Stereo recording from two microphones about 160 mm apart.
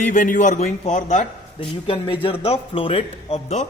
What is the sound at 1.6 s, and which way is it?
A man's voice, 35° left (ahead or behind).